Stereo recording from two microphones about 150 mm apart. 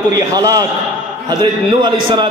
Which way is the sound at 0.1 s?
25° right (ahead or behind).